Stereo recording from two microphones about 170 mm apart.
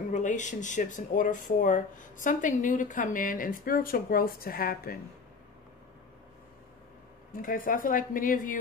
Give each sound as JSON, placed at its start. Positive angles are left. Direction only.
{"t": 0.1, "sound": "speech", "side_deg": 45}
{"t": 7.4, "sound": "speech", "side_deg": 55}